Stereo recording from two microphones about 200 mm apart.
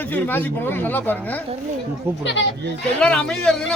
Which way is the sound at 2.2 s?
65° left (ahead or behind).